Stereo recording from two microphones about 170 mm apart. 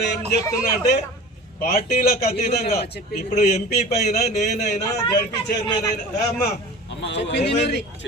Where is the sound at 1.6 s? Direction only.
65° left (ahead or behind).